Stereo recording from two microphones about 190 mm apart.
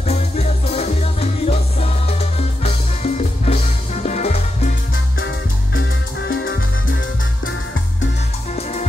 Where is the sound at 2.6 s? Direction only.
35° left (ahead or behind).